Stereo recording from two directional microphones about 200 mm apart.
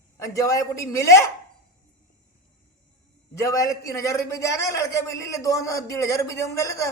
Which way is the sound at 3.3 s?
15° left (ahead or behind).